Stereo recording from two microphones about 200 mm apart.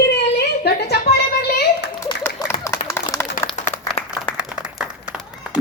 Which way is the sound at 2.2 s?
10° left (ahead or behind).